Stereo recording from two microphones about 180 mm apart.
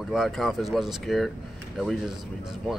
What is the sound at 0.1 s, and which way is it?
Speech, centre (ahead or behind).